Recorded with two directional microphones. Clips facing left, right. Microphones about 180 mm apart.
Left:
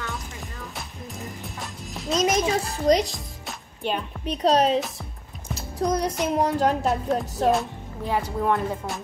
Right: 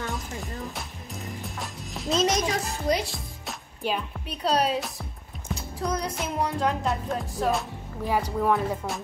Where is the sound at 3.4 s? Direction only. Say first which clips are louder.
Left 1 dB; 5° right (ahead or behind).